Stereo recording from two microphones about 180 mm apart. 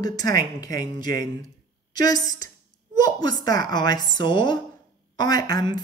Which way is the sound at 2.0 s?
20° left (ahead or behind).